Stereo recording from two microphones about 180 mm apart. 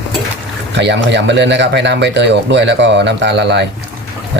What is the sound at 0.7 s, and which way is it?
Speech, 75° right (ahead or behind).